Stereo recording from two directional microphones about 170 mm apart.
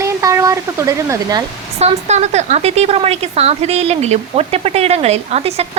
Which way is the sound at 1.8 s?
40° right (ahead or behind).